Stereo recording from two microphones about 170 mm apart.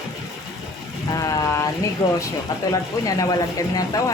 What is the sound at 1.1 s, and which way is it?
Speech, 20° left (ahead or behind).